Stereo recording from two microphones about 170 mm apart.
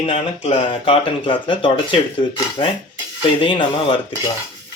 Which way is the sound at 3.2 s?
30° left (ahead or behind).